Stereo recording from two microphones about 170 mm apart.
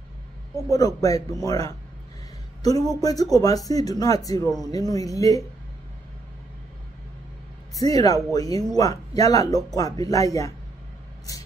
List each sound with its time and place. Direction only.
0.7 s speech: 20° left (ahead or behind)
7.8 s speech: 20° left (ahead or behind)